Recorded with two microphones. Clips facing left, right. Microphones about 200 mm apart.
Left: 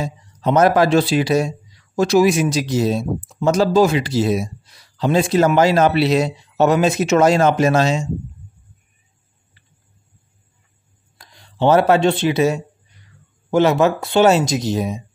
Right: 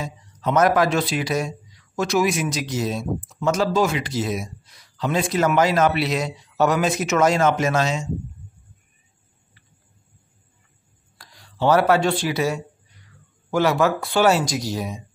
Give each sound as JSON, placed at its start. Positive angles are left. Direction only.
{"t": 0.0, "sound": "a man's voice", "side_deg": 30}
{"t": 11.1, "sound": "a man's voice", "side_deg": 25}